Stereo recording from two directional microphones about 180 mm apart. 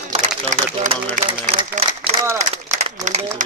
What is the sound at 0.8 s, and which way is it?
Speech, 45° right (ahead or behind).